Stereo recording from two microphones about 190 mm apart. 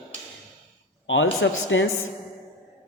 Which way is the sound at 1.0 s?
85° left.